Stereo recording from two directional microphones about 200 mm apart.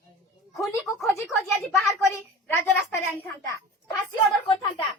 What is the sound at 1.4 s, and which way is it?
Speech, centre (ahead or behind).